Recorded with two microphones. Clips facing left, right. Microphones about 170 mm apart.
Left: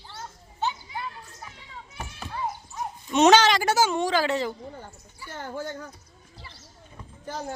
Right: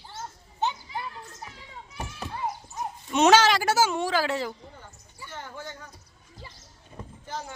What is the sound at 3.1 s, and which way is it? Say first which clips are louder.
Speech: left 1 dB; 5° right (ahead or behind).